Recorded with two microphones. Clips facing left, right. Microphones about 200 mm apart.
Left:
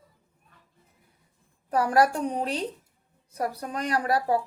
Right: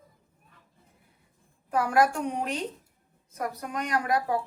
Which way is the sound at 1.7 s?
35° left (ahead or behind).